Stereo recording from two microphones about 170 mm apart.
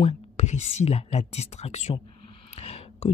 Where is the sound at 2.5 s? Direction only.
40° left (ahead or behind).